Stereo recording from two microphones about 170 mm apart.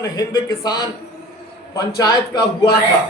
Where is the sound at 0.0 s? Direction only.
20° left (ahead or behind).